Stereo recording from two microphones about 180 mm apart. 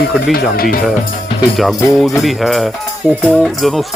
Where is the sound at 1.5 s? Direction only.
Centre (ahead or behind).